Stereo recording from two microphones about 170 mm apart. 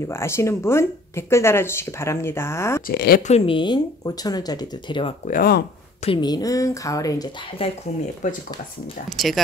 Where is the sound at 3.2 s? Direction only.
35° left (ahead or behind).